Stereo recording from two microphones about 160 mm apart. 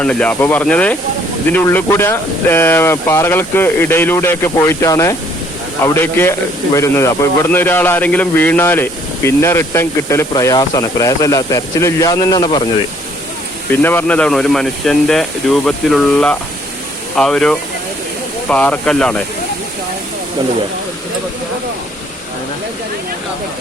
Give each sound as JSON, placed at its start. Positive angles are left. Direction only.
{"t": 0.0, "sound": "speech", "side_deg": 5}
{"t": 13.7, "sound": "speech", "side_deg": 10}